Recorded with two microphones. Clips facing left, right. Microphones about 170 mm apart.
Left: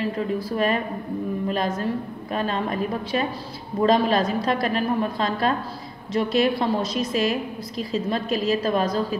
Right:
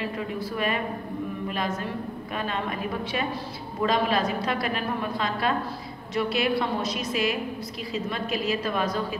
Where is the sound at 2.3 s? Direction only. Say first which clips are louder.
Left 7 dB; 35° left (ahead or behind).